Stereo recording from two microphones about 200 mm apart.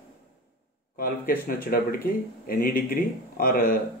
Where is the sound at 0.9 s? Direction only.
45° left (ahead or behind).